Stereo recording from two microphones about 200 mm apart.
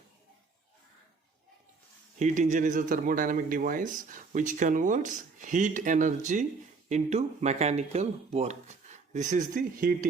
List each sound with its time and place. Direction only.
2.1 s speech: 35° right (ahead or behind)